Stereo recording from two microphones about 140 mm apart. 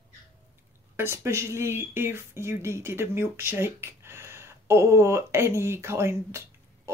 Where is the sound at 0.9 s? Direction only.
20° right (ahead or behind).